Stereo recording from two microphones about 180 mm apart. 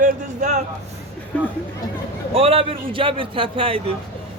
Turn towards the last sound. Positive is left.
turn(degrees=-30)  # may be behind; listen again after turning